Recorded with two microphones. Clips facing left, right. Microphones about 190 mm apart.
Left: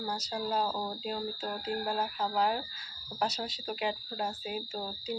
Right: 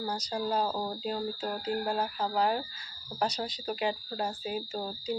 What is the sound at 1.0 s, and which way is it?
Speech, centre (ahead or behind).